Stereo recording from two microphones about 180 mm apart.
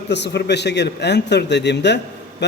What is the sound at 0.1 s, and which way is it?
A man's voice, 70° left (ahead or behind).